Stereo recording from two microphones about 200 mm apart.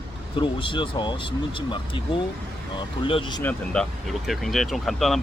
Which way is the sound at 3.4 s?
5° left (ahead or behind).